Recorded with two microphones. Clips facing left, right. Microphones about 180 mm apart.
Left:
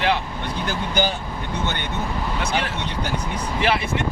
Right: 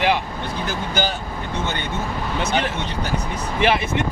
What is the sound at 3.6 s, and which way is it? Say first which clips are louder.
Speech: right 3 dB; 20° right (ahead or behind).